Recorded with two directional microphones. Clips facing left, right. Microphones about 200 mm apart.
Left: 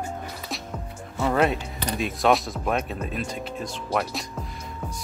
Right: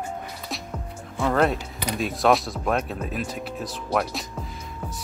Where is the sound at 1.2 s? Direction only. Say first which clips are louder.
Even; 5° left (ahead or behind).